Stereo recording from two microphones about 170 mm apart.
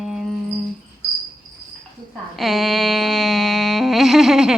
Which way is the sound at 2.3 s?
Centre (ahead or behind).